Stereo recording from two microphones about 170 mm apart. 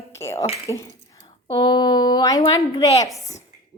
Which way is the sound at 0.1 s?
15° left (ahead or behind).